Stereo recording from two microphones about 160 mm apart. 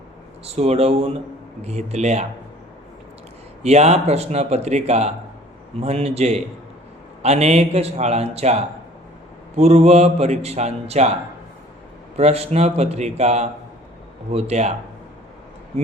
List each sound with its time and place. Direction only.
0.4 s a man's voice: 40° right (ahead or behind)
3.6 s a man's voice: 45° right (ahead or behind)
12.1 s a man's voice: 40° right (ahead or behind)